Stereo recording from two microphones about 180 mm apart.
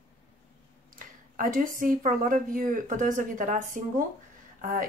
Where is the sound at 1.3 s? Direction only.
50° right (ahead or behind).